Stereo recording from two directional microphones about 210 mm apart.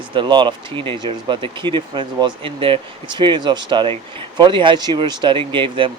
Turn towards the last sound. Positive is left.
turn(degrees=-25)  # may be behind; listen again after turning